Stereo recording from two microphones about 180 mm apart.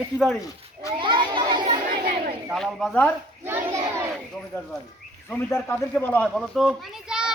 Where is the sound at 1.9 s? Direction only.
60° right (ahead or behind).